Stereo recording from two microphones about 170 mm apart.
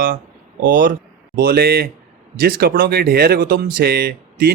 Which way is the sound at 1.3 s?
65° right (ahead or behind).